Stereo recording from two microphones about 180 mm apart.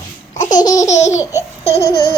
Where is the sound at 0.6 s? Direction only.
20° left (ahead or behind).